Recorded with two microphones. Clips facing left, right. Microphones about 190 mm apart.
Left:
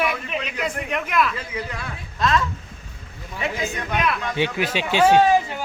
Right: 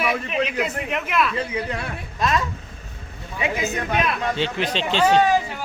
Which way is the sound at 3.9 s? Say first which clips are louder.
Left 1 dB; 25° right (ahead or behind).